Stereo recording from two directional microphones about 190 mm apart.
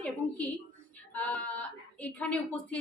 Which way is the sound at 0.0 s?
5° left (ahead or behind).